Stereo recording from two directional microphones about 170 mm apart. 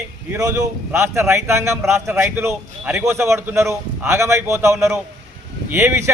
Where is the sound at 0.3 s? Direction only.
20° right (ahead or behind).